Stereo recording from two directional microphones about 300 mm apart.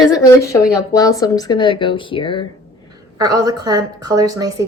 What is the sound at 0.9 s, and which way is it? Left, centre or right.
A woman's voice, centre.